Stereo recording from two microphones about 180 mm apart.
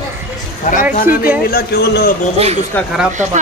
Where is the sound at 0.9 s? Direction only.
50° left (ahead or behind).